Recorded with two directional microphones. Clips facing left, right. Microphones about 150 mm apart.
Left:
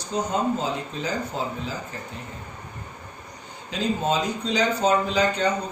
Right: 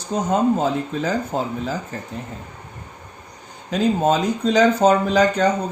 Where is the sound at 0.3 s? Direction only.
50° right (ahead or behind).